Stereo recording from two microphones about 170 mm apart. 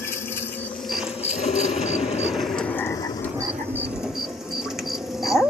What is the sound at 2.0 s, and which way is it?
Frog, centre (ahead or behind).